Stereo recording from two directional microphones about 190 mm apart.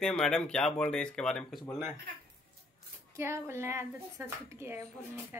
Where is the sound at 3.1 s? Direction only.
15° right (ahead or behind).